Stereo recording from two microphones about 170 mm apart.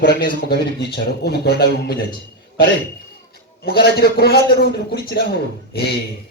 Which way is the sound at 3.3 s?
65° left (ahead or behind).